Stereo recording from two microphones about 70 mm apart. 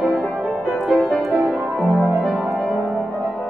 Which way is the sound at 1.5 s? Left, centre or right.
Centre.